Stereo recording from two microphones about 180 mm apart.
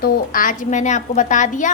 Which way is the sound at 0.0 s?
50° left (ahead or behind).